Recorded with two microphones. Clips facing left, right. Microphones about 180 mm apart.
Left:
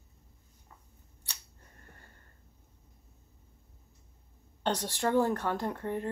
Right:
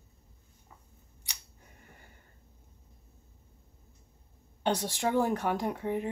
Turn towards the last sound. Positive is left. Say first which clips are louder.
# right 2 dB
turn(degrees=-10)  # may be behind; listen again after turning